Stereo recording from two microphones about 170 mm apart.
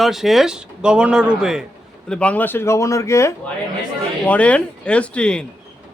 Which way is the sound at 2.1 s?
10° left (ahead or behind).